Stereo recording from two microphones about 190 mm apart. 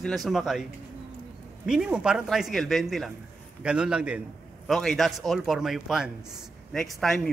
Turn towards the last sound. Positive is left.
turn(degrees=0)  # may be behind; listen again after turning